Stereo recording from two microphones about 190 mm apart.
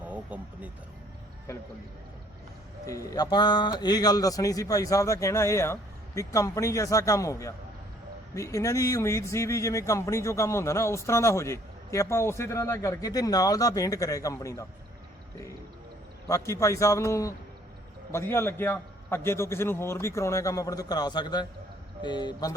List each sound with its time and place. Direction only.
0.0 s a sound: 10° right (ahead or behind)
2.8 s speech: 15° left (ahead or behind)
16.2 s speech: 15° left (ahead or behind)